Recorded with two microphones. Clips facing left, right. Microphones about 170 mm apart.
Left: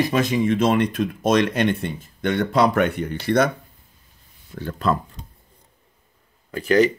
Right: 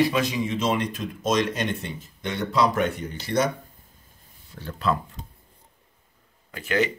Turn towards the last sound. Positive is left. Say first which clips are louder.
# left 7 dB
turn(degrees=35)  # may be behind; listen again after turning